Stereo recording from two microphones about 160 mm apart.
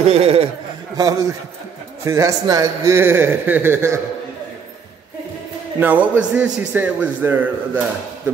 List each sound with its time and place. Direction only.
0.0 s speech: 40° right (ahead or behind)
0.9 s a man's voice: 20° right (ahead or behind)
5.8 s a man's voice: 10° right (ahead or behind)